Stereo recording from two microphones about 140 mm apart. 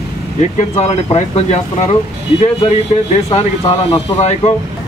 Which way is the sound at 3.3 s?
45° left (ahead or behind).